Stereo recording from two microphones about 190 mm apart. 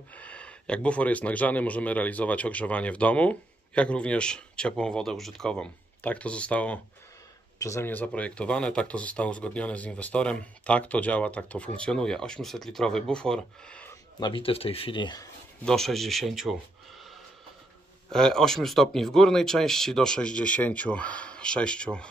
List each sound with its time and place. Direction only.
0.1 s speech: 5° left (ahead or behind)
14.2 s speech: 30° left (ahead or behind)
15.6 s speech: centre (ahead or behind)
18.1 s speech: 5° left (ahead or behind)